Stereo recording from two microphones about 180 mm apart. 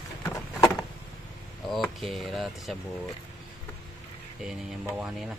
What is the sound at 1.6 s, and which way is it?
Speech, centre (ahead or behind).